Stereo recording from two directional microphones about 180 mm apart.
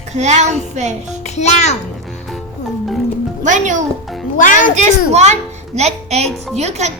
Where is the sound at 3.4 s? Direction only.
45° right (ahead or behind).